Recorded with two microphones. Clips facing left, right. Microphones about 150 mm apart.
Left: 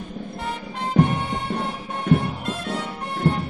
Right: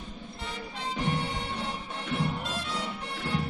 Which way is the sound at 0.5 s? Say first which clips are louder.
Left 7 dB; 55° left (ahead or behind).